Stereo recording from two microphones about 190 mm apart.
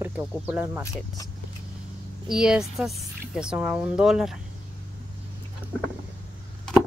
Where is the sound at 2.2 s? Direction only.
5° right (ahead or behind).